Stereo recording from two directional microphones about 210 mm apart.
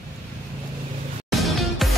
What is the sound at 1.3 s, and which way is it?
Music, centre (ahead or behind).